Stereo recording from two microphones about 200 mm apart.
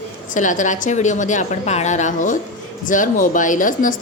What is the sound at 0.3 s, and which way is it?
Speech, 40° left (ahead or behind).